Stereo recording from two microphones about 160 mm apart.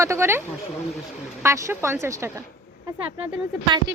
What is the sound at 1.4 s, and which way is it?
Speech, 15° right (ahead or behind).